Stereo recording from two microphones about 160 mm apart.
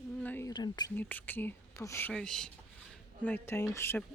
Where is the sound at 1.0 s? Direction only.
10° left (ahead or behind).